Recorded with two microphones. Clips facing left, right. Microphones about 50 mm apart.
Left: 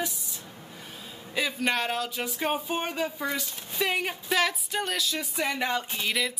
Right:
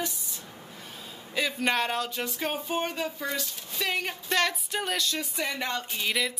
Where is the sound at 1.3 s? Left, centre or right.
Centre.